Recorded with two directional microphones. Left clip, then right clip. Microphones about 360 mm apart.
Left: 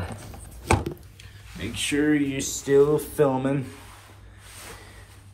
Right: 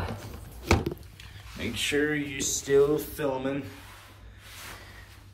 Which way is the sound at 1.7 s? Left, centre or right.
Centre.